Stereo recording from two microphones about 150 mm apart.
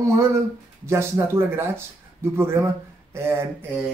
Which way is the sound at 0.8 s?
20° right (ahead or behind).